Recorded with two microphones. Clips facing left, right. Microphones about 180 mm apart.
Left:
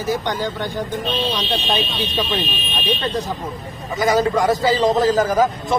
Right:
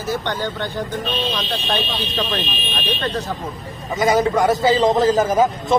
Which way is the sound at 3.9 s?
20° right (ahead or behind).